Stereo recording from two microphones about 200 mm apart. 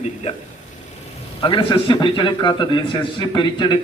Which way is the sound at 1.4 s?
25° left (ahead or behind).